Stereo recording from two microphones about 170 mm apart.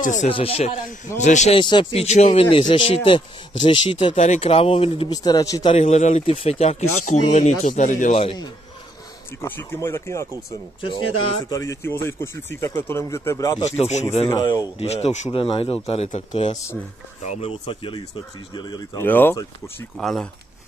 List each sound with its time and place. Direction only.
0.0 s speech: 45° left (ahead or behind)
0.3 s speech: 35° left (ahead or behind)
1.6 s speech: 30° left (ahead or behind)
4.1 s speech: 40° left (ahead or behind); by 5.8 s 25° left (ahead or behind)
5.8 s speech: 40° left (ahead or behind)
8.2 s speech: 30° left (ahead or behind)
9.4 s speech: 15° left (ahead or behind)
11.4 s speech: 20° left (ahead or behind)
13.7 s speech: 40° left (ahead or behind)
14.3 s speech: 25° left (ahead or behind)
19.0 s speech: 10° left (ahead or behind)